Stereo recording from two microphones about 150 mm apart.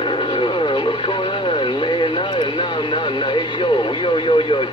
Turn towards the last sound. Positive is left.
turn(degrees=35)  # may be behind; listen again after turning